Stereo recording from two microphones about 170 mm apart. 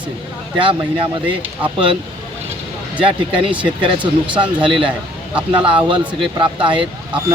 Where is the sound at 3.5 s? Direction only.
30° right (ahead or behind).